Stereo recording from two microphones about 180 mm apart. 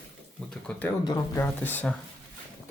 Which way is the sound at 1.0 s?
20° left (ahead or behind).